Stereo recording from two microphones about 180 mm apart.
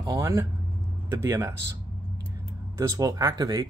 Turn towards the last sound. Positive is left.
turn(degrees=-20)  # may be behind; listen again after turning